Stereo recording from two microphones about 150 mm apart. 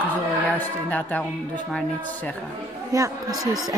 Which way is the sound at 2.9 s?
20° right (ahead or behind).